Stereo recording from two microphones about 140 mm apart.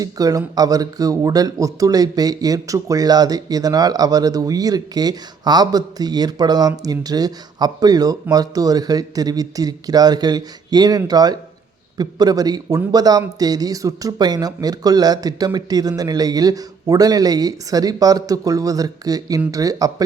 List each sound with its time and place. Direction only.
0.0 s speech: 25° right (ahead or behind)